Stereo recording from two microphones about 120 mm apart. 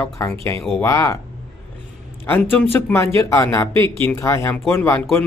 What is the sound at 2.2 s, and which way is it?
Speech, 20° left (ahead or behind).